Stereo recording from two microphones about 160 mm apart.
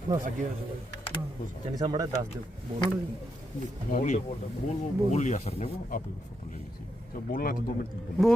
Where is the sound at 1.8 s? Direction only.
25° right (ahead or behind).